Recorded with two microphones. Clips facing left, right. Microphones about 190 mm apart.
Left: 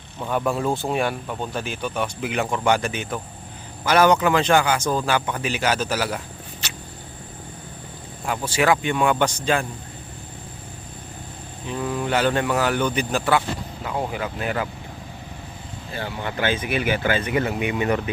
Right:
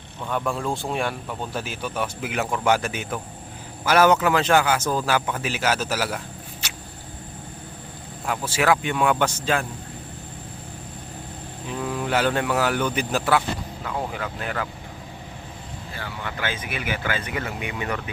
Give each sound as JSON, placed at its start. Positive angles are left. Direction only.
{"t": 0.2, "sound": "speech", "side_deg": 5}
{"t": 6.6, "sound": "a sound", "side_deg": -10}
{"t": 8.3, "sound": "speech", "side_deg": -5}
{"t": 11.7, "sound": "speech", "side_deg": 0}
{"t": 13.8, "sound": "speech", "side_deg": 10}
{"t": 16.0, "sound": "speech", "side_deg": 25}